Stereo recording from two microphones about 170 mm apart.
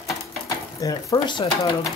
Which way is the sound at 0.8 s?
20° left (ahead or behind).